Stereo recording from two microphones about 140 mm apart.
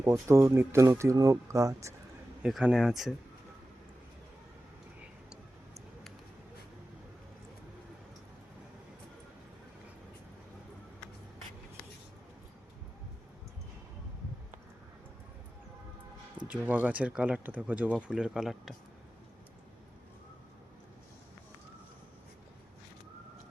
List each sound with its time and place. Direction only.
0.0 s speech: 20° right (ahead or behind)
2.4 s speech: 5° right (ahead or behind)
16.5 s speech: 10° right (ahead or behind)